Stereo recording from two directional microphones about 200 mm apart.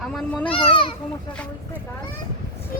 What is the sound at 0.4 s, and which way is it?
Speech, 25° left (ahead or behind).